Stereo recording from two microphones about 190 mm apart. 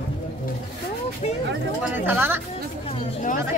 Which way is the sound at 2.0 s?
10° right (ahead or behind).